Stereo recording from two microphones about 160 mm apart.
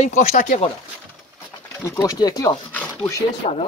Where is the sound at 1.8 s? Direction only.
20° left (ahead or behind).